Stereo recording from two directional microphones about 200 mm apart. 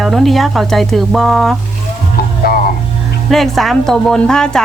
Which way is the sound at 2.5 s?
45° left (ahead or behind).